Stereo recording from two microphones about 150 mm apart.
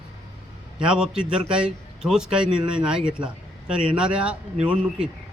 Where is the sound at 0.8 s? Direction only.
5° right (ahead or behind).